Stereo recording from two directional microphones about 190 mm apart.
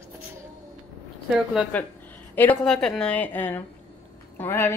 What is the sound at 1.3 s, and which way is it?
A woman's voice, centre (ahead or behind).